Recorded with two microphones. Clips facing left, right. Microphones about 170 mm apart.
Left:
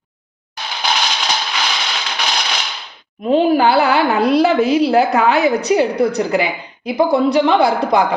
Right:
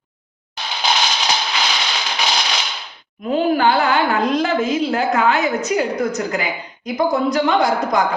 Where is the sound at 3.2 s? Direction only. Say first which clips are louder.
Left 4 dB; 35° left (ahead or behind).